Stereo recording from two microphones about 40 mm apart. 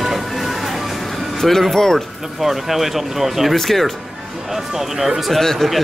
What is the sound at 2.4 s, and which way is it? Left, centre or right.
Speech, centre.